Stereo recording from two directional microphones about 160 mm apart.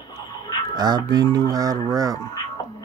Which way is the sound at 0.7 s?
25° right (ahead or behind).